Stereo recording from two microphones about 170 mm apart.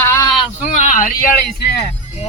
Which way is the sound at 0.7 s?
50° left (ahead or behind).